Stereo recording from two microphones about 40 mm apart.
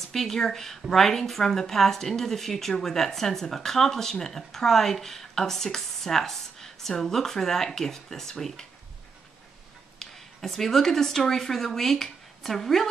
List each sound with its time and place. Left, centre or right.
0.1 s a woman's voice: centre
9.9 s speech: centre